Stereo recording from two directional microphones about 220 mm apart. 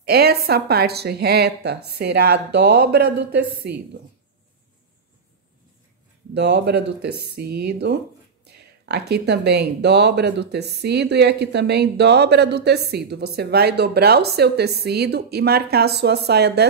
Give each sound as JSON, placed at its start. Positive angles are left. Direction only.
{"t": 0.0, "sound": "speech", "side_deg": -45}
{"t": 6.3, "sound": "speech", "side_deg": -50}